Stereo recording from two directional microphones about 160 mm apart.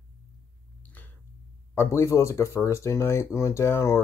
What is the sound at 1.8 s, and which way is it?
Speech, 15° left (ahead or behind).